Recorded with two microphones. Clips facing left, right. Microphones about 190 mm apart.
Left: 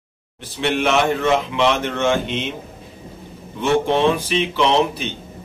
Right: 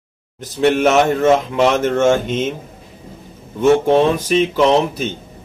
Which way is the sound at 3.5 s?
45° right (ahead or behind).